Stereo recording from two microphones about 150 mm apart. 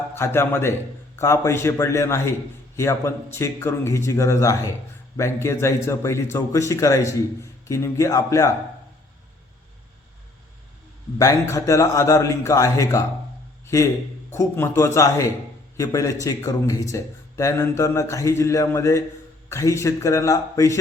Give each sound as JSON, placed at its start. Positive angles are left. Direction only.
{"t": 0.2, "sound": "a man's voice", "side_deg": 15}
{"t": 11.2, "sound": "speech", "side_deg": 20}